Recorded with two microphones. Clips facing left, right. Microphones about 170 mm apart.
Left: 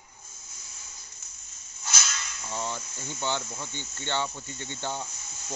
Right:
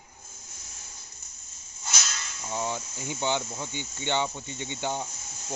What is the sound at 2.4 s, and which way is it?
Cricket, 15° right (ahead or behind).